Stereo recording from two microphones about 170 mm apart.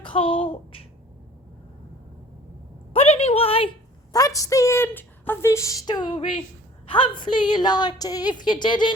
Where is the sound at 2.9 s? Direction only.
35° left (ahead or behind).